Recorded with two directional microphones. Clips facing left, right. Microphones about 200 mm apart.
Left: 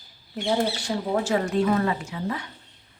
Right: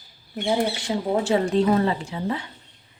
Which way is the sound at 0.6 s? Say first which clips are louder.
Right 1 dB; 20° right (ahead or behind).